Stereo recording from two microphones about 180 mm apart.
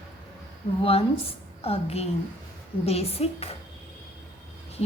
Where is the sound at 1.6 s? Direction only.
35° left (ahead or behind).